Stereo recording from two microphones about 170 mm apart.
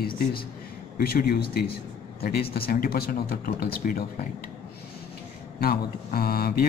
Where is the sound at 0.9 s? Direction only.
60° left (ahead or behind).